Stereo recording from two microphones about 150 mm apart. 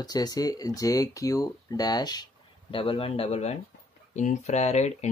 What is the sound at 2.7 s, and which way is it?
Speech, 35° left (ahead or behind).